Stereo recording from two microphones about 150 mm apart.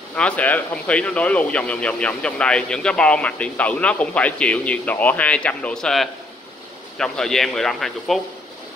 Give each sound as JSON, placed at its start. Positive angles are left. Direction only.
{"t": 0.1, "sound": "a man's voice", "side_deg": 10}